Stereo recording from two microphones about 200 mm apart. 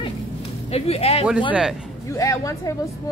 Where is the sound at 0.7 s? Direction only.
30° left (ahead or behind).